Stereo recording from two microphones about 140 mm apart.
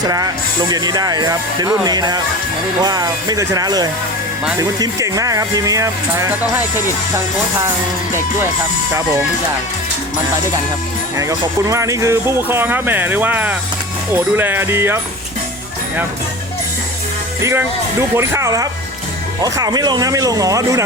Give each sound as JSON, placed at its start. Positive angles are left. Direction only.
{"t": 0.0, "sound": "speech", "side_deg": -25}
{"t": 11.2, "sound": "speech", "side_deg": -20}
{"t": 17.4, "sound": "speech", "side_deg": -20}